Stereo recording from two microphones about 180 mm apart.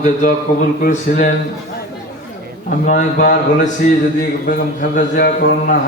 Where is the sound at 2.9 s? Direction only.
45° left (ahead or behind).